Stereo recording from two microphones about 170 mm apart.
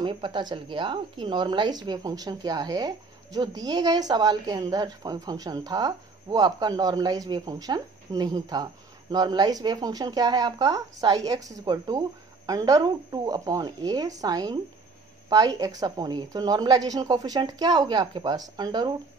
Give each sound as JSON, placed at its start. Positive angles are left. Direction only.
{"t": 0.0, "sound": "speech", "side_deg": -30}